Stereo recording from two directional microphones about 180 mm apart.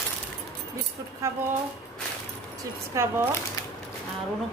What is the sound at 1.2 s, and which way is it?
Speech, 15° right (ahead or behind).